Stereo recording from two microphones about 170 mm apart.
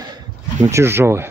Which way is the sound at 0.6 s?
15° right (ahead or behind).